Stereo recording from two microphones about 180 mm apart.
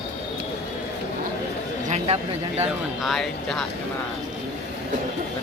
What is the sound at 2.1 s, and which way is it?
Speech, 40° right (ahead or behind).